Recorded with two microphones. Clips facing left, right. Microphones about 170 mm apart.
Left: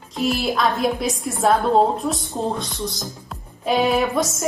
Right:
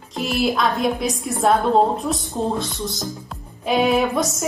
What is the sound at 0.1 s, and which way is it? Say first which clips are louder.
Speech: even; centre (ahead or behind).